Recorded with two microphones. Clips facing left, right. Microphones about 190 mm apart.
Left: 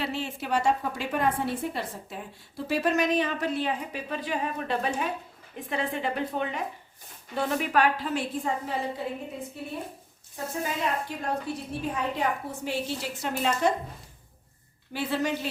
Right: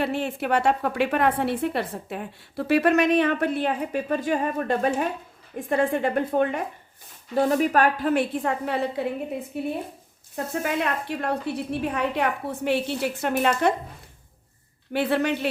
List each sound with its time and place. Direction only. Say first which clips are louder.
0.0 s a woman's voice: right 6 dB; 55° right (ahead or behind)
10.3 s a woman's voice: right 5 dB; 65° right (ahead or behind)
14.9 s a woman's voice: right 5 dB; 60° right (ahead or behind)